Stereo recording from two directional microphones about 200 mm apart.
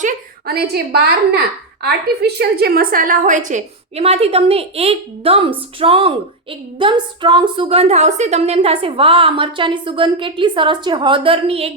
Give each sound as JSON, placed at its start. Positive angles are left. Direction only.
{"t": 0.0, "sound": "a woman's voice", "side_deg": -50}